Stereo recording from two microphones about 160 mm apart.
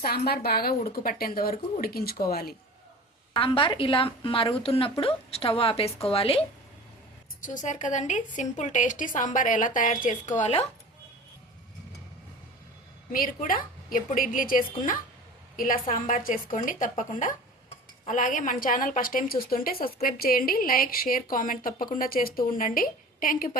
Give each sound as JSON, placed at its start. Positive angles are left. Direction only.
{"t": 0.0, "sound": "speech", "side_deg": 75}
{"t": 3.3, "sound": "a woman's voice", "side_deg": 35}
{"t": 7.4, "sound": "a woman's voice", "side_deg": 50}
{"t": 13.1, "sound": "a woman's voice", "side_deg": 60}